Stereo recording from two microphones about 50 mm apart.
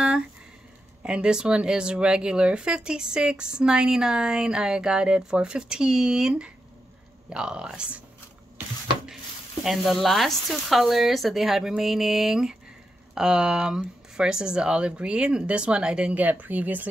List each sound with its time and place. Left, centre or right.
1.0 s speech: centre
9.7 s speech: centre
16.2 s speech: right